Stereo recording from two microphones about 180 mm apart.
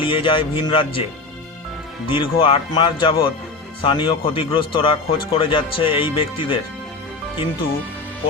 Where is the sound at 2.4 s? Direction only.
30° left (ahead or behind).